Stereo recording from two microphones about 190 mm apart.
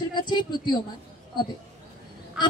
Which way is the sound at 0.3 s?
25° left (ahead or behind).